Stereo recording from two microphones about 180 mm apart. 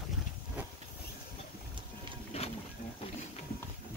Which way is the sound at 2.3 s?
35° left (ahead or behind).